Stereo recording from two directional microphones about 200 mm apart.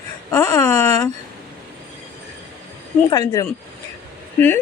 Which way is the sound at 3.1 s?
15° left (ahead or behind).